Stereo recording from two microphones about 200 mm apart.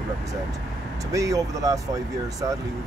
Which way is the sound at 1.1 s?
15° right (ahead or behind).